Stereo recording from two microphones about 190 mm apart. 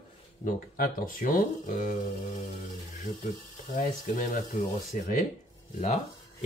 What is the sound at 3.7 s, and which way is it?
Speech, 45° left (ahead or behind).